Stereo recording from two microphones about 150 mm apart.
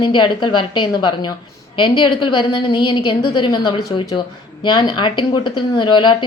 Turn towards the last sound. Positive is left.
turn(degrees=30)  # may be behind; listen again after turning